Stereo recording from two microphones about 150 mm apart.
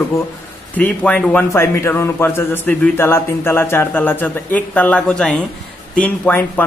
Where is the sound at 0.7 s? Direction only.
10° left (ahead or behind).